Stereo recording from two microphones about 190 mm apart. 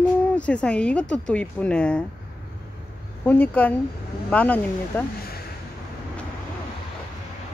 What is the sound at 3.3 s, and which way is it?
Speech, 10° left (ahead or behind).